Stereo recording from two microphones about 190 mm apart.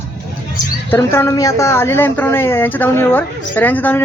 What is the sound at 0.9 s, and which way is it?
A woman's voice, 10° left (ahead or behind).